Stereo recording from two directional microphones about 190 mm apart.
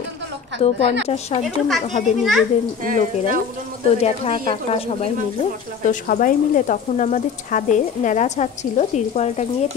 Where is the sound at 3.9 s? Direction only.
30° left (ahead or behind).